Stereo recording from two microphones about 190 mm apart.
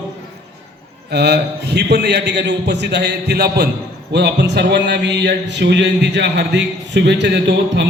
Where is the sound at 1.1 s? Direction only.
60° right (ahead or behind).